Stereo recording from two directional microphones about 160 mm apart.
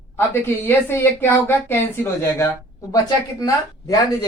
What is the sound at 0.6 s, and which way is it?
Speech, 15° left (ahead or behind).